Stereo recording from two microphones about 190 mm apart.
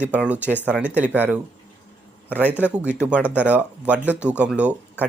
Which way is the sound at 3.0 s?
5° right (ahead or behind).